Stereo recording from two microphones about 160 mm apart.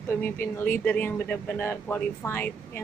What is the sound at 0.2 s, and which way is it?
Speech, 15° left (ahead or behind).